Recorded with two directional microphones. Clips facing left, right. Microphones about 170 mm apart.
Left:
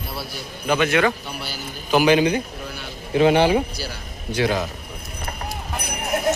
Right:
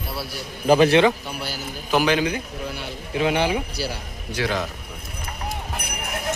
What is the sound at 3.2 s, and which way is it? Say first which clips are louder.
Speech: left 6 dB; 35° left (ahead or behind).